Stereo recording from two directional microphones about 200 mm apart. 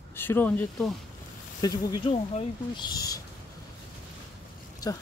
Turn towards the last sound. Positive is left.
turn(degrees=20)  # may be behind; listen again after turning